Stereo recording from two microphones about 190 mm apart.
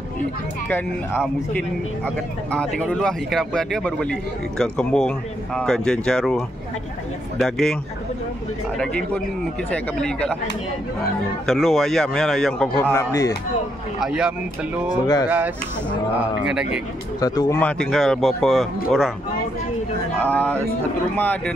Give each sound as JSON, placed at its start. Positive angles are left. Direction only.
{"t": 0.7, "sound": "speech", "side_deg": 10}
{"t": 2.5, "sound": "a man's voice", "side_deg": 5}
{"t": 8.7, "sound": "a man's voice", "side_deg": 5}
{"t": 11.4, "sound": "a man's voice", "side_deg": 0}
{"t": 12.9, "sound": "speech", "side_deg": 15}
{"t": 13.9, "sound": "a man's voice", "side_deg": -5}
{"t": 17.2, "sound": "a man's voice", "side_deg": 15}
{"t": 20.2, "sound": "speech", "side_deg": 10}